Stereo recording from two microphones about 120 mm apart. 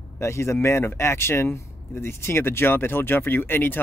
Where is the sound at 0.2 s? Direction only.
20° left (ahead or behind).